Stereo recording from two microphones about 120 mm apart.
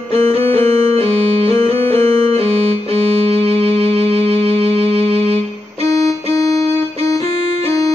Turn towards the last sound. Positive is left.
turn(degrees=30)  # may be behind; listen again after turning